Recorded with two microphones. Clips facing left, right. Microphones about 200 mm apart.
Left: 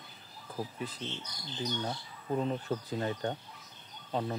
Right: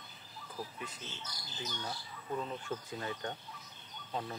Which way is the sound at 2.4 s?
40° left (ahead or behind).